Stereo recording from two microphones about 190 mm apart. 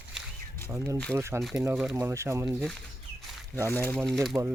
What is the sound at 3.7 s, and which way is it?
Speech, 10° left (ahead or behind).